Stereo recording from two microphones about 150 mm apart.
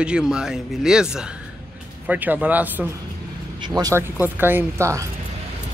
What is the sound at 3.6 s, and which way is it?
Speech, 25° right (ahead or behind).